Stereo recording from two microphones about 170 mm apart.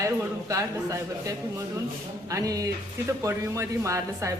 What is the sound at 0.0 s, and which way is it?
Speech, 20° right (ahead or behind).